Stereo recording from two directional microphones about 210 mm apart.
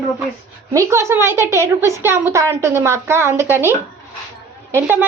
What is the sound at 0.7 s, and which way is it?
A woman's voice, 15° right (ahead or behind).